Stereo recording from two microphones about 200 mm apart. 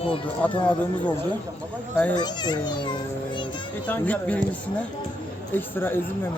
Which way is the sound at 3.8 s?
10° left (ahead or behind).